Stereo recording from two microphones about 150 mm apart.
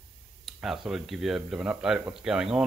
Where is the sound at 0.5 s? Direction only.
Centre (ahead or behind).